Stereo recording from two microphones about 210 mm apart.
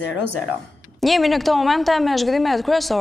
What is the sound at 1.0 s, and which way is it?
A woman's voice, centre (ahead or behind).